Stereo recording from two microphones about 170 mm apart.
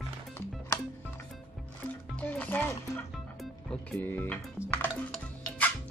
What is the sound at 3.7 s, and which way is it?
Speech, 10° left (ahead or behind).